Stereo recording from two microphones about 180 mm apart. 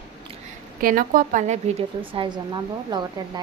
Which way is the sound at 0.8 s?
50° right (ahead or behind).